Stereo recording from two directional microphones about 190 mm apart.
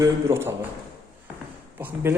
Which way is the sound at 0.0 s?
15° right (ahead or behind).